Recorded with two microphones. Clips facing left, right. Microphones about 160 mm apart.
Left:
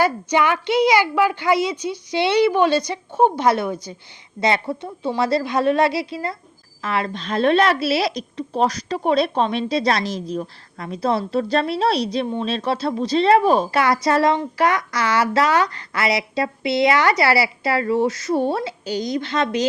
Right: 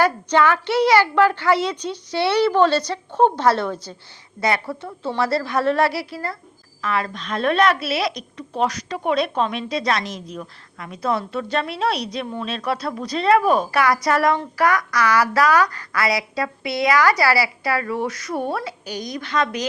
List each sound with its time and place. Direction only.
0.0 s a woman's voice: 10° left (ahead or behind)
4.4 s a woman's voice: 25° left (ahead or behind)